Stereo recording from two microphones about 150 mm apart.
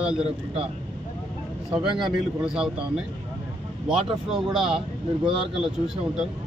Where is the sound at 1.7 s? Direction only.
Centre (ahead or behind).